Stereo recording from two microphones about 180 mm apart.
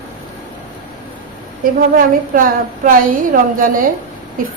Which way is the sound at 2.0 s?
50° right (ahead or behind).